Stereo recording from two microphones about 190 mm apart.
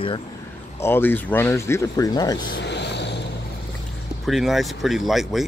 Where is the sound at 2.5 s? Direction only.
65° left (ahead or behind).